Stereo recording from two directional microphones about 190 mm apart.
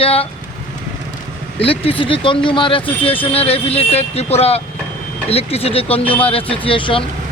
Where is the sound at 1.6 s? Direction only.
30° left (ahead or behind).